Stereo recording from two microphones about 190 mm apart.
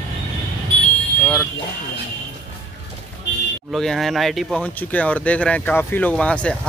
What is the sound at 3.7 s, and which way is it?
Speech, centre (ahead or behind).